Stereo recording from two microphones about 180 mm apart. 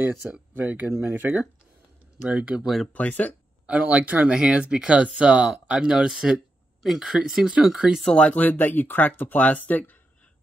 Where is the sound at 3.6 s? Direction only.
5° right (ahead or behind); by 10.3 s 10° left (ahead or behind).